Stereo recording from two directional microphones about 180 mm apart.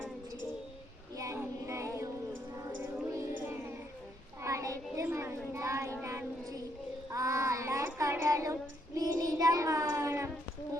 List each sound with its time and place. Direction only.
1.1 s child singing: 15° right (ahead or behind)
2.8 s a sound: 15° right (ahead or behind)
4.4 s child singing: 15° right (ahead or behind)